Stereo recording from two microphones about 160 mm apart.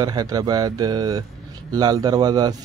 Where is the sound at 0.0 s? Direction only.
25° right (ahead or behind).